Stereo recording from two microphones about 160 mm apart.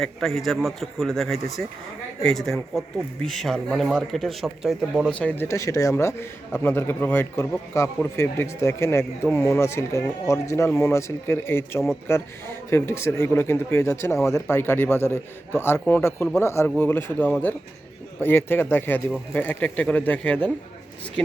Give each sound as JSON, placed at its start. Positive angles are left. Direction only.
{"t": 0.0, "sound": "a man's voice", "side_deg": 0}